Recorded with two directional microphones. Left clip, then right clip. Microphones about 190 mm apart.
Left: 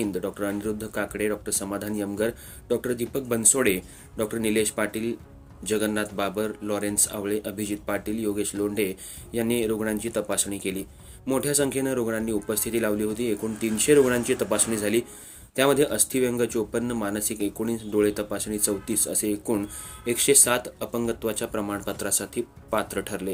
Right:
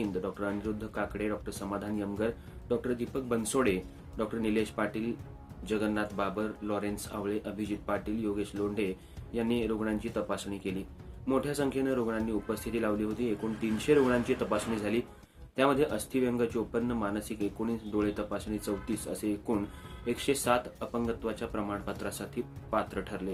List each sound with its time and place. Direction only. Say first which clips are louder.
0.2 s speech: left 5 dB; 40° left (ahead or behind)